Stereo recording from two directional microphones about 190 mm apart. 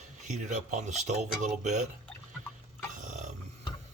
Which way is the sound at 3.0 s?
40° right (ahead or behind).